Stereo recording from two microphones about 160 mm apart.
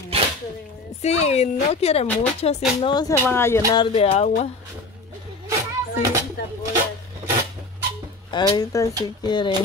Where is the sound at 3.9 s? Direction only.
45° left (ahead or behind).